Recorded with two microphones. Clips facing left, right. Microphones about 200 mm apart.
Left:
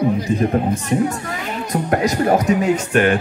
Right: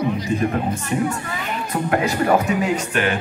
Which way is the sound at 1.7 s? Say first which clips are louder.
Left 2 dB; 40° left (ahead or behind).